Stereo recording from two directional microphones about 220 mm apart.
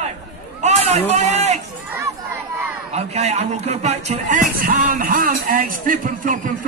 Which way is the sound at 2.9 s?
30° right (ahead or behind).